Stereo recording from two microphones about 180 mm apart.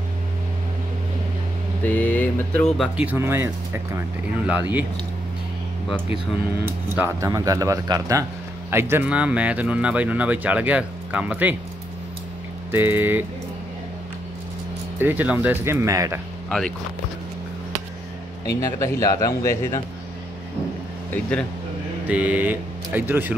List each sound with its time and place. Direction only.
1.9 s speech: 10° left (ahead or behind)
3.0 s a man's voice: 10° right (ahead or behind)
7.0 s a man's voice: 15° right (ahead or behind)
12.7 s a man's voice: 10° right (ahead or behind)
15.0 s a man's voice: 10° right (ahead or behind)
16.4 s speech: 5° left (ahead or behind)
18.6 s speech: 15° left (ahead or behind)
21.1 s speech: 5° left (ahead or behind)
22.0 s a man's voice: 10° right (ahead or behind)